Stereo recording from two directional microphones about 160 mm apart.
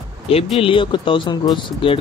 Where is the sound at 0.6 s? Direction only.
30° left (ahead or behind).